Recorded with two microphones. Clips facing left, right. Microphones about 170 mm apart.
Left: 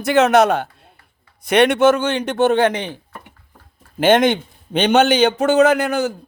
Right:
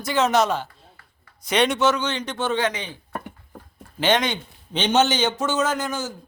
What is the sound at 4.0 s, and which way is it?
A man's voice, 50° left (ahead or behind).